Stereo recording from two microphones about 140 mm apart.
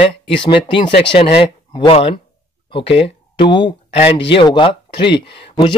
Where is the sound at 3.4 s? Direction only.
35° left (ahead or behind).